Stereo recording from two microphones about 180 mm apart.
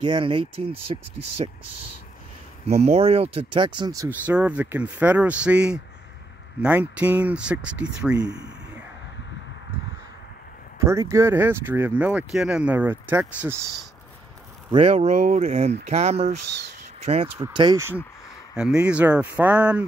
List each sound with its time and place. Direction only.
0.0 s speech: 25° right (ahead or behind)
2.7 s speech: 35° right (ahead or behind); by 8.2 s 5° right (ahead or behind)
8.2 s speech: 20° right (ahead or behind)
10.8 s speech: 15° right (ahead or behind)
14.7 s speech: 30° right (ahead or behind)
18.6 s speech: 5° right (ahead or behind)